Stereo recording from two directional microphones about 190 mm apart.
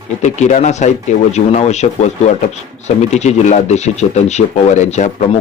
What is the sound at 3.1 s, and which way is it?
A man's voice, 35° left (ahead or behind).